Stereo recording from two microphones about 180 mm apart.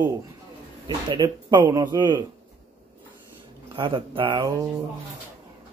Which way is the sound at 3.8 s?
30° right (ahead or behind).